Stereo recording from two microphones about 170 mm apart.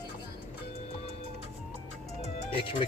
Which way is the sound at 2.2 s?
30° left (ahead or behind).